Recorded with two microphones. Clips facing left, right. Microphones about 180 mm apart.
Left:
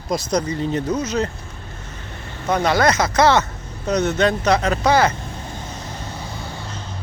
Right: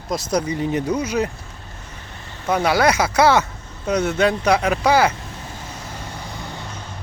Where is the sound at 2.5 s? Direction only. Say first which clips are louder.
Even; 10° right (ahead or behind).